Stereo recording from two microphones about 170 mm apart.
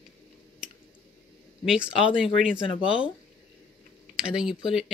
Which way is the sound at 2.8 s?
30° left (ahead or behind).